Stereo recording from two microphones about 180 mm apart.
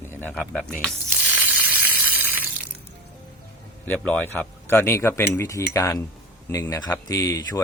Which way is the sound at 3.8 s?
5° left (ahead or behind).